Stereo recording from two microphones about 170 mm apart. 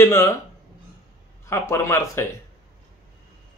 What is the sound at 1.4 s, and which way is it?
Speech, 15° left (ahead or behind).